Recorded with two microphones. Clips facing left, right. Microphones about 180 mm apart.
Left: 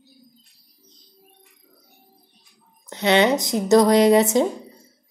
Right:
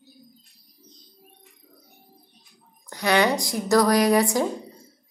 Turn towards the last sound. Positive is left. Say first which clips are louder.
# left 4 dB
turn(degrees=20)  # may be behind; listen again after turning